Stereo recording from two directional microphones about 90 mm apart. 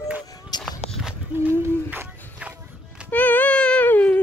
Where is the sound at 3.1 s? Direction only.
20° left (ahead or behind).